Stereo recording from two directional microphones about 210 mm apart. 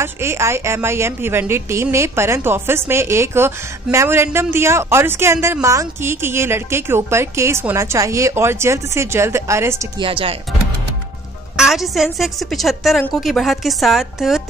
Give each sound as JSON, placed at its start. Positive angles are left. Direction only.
{"t": 0.0, "sound": "a woman's voice", "side_deg": -10}
{"t": 10.0, "sound": "speech", "side_deg": -25}
{"t": 11.5, "sound": "a woman's voice", "side_deg": 0}